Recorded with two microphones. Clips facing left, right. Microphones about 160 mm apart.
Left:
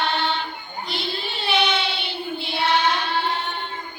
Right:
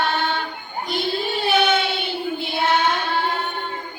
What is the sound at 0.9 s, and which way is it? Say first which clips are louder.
Child singing: right 7 dB; 50° right (ahead or behind).